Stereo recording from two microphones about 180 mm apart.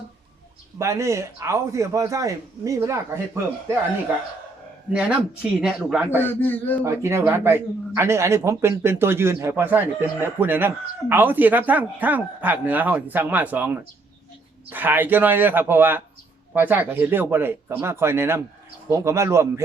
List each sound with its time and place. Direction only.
0.8 s speech: 15° right (ahead or behind)
4.9 s speech: 5° right (ahead or behind)
6.1 s speech: 10° left (ahead or behind)
6.8 s speech: 15° right (ahead or behind)
14.7 s speech: 10° right (ahead or behind)